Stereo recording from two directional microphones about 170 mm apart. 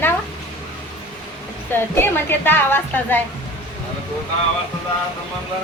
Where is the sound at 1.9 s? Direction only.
10° left (ahead or behind).